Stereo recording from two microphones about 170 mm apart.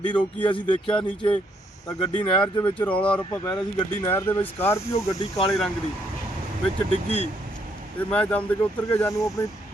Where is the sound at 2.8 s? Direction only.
10° left (ahead or behind).